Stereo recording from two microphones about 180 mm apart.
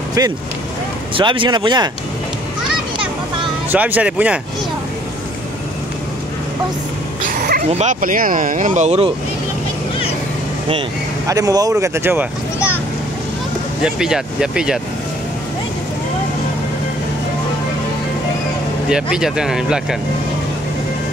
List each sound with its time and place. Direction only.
0.2 s speech: 20° right (ahead or behind)
3.7 s speech: 10° right (ahead or behind)
7.2 s dog: 55° right (ahead or behind)
7.7 s speech: 45° right (ahead or behind)
11.2 s speech: 20° right (ahead or behind)
13.8 s speech: 5° right (ahead or behind)
18.9 s speech: 5° right (ahead or behind)